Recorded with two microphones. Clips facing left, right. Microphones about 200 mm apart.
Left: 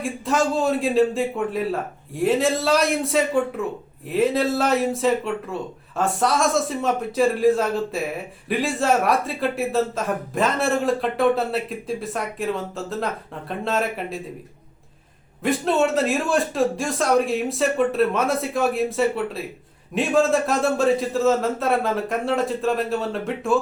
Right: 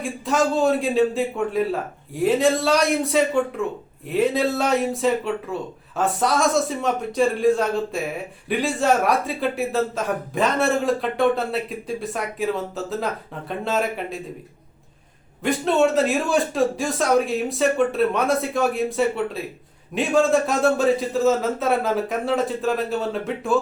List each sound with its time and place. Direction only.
0.0 s speech: centre (ahead or behind)
15.4 s speech: centre (ahead or behind)